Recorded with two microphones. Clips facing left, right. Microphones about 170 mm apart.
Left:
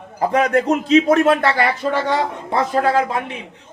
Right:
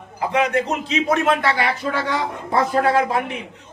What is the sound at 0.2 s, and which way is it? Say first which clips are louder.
Speech: left 3 dB; 40° left (ahead or behind).